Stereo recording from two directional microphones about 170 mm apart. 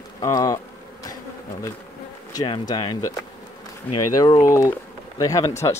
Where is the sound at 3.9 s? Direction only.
10° left (ahead or behind).